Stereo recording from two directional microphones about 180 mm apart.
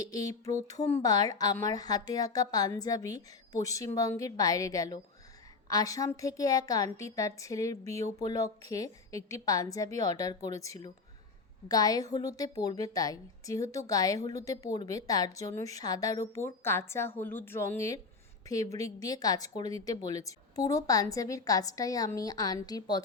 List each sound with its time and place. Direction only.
0.0 s a woman's voice: 20° left (ahead or behind)